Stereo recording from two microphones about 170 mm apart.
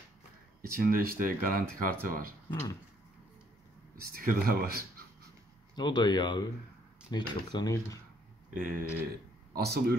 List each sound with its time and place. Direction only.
0.6 s speech: 55° right (ahead or behind)
4.1 s speech: 60° right (ahead or behind)
5.8 s speech: 25° left (ahead or behind)
8.5 s speech: 55° right (ahead or behind)
9.6 s speech: 70° right (ahead or behind)